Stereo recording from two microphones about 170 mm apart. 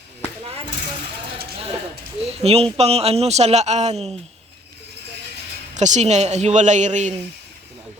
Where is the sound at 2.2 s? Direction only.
35° right (ahead or behind).